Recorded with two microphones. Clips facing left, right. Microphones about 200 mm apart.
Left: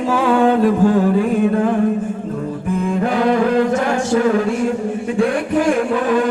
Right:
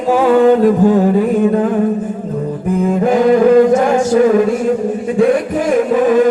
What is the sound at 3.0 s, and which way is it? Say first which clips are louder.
Chant: right 7 dB; 45° right (ahead or behind).